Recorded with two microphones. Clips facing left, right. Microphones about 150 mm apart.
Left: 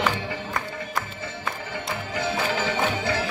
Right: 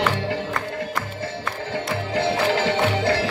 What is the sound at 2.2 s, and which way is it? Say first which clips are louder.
Music: right 5 dB; 75° right (ahead or behind).